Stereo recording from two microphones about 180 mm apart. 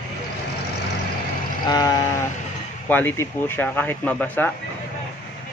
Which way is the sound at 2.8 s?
10° left (ahead or behind).